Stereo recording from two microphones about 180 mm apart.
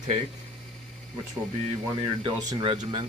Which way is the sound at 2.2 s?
30° right (ahead or behind).